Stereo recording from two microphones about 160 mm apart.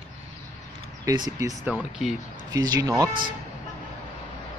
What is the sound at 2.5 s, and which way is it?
Speech, 25° right (ahead or behind).